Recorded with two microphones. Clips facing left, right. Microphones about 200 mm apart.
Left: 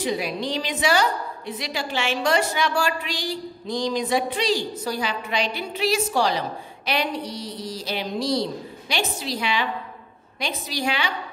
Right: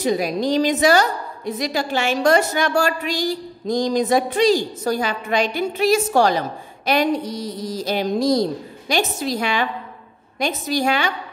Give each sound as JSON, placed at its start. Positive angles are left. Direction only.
{"t": 0.0, "sound": "a woman's voice", "side_deg": -40}